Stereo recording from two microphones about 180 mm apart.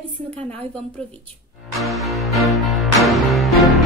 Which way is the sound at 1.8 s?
Centre (ahead or behind).